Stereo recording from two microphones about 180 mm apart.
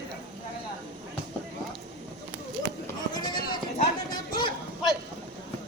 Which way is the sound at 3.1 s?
25° left (ahead or behind).